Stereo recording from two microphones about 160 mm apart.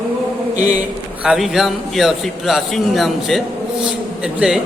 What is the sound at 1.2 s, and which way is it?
Music, 5° right (ahead or behind).